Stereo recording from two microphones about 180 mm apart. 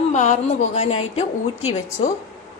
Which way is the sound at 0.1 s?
40° left (ahead or behind).